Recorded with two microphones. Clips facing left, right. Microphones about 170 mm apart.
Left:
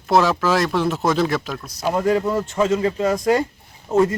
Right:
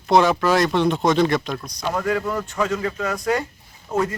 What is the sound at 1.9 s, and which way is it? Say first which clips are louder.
Speech: left 4 dB; 25° left (ahead or behind).